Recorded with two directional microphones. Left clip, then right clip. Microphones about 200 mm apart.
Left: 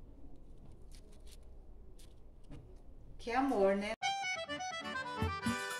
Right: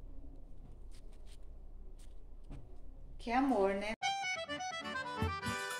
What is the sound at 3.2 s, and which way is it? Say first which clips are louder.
Speech: even; 20° right (ahead or behind).